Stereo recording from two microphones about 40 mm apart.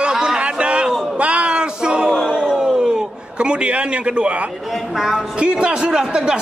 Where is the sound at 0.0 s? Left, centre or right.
Centre.